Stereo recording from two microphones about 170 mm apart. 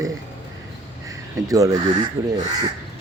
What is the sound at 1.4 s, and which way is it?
Speech, 20° right (ahead or behind).